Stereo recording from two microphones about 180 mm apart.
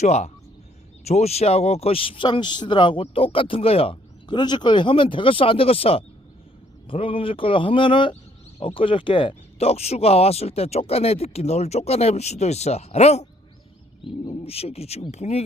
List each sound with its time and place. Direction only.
0.0 s speech: 40° left (ahead or behind)